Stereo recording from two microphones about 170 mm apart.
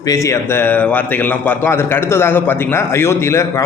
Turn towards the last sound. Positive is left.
turn(degrees=15)  # may be behind; listen again after turning